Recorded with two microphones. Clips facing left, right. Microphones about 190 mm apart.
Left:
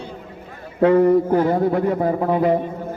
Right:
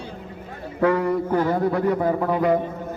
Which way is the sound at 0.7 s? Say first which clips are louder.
Left 6 dB; 30° left (ahead or behind).